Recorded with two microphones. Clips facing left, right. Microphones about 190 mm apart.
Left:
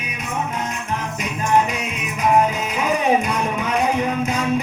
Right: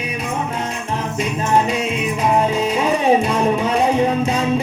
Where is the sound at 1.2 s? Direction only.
30° right (ahead or behind).